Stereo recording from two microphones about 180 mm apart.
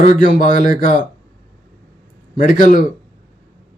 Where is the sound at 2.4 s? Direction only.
45° left (ahead or behind).